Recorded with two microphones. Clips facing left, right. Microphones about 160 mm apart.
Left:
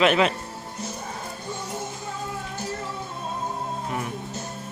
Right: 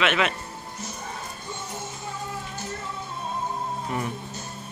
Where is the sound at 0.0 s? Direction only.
35° left (ahead or behind).